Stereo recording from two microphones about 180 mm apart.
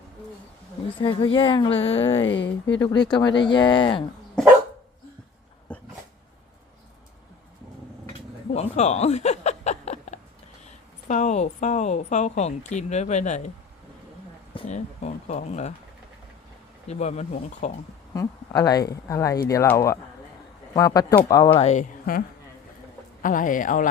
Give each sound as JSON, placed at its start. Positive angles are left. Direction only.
{"t": 1.0, "sound": "a woman's voice", "side_deg": 30}
{"t": 2.2, "sound": "speech", "side_deg": 90}
{"t": 2.8, "sound": "a woman's voice", "side_deg": 25}
{"t": 5.7, "sound": "dog", "side_deg": 5}
{"t": 8.5, "sound": "a sound", "side_deg": 35}
{"t": 11.1, "sound": "speech", "side_deg": 40}
{"t": 14.7, "sound": "speech", "side_deg": 40}
{"t": 16.9, "sound": "speech", "side_deg": 40}
{"t": 18.1, "sound": "a woman's voice", "side_deg": 20}
{"t": 21.6, "sound": "speech", "side_deg": 40}
{"t": 23.2, "sound": "speech", "side_deg": 50}